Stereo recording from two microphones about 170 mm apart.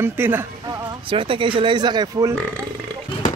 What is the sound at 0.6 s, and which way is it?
Speech, 25° right (ahead or behind).